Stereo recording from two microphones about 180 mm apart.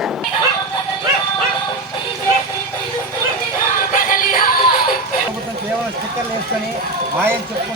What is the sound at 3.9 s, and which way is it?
Music, 50° left (ahead or behind).